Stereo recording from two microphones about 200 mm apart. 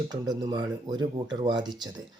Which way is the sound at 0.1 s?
20° right (ahead or behind).